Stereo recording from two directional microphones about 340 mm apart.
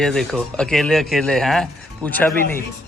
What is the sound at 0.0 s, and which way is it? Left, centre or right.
Speech, centre.